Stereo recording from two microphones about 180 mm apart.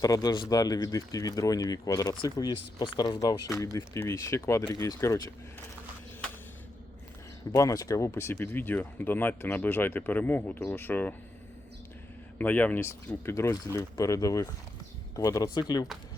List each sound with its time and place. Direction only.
0.0 s speech: 20° left (ahead or behind)
7.5 s speech: 20° left (ahead or behind)
12.4 s speech: 10° left (ahead or behind)